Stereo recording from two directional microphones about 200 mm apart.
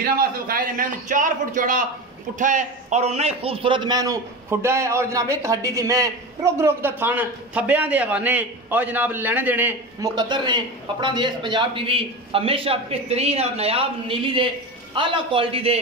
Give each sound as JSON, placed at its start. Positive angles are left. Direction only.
{"t": 0.0, "sound": "a man's voice", "side_deg": -45}